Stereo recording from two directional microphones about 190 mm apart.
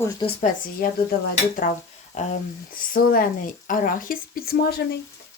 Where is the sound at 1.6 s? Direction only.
45° left (ahead or behind).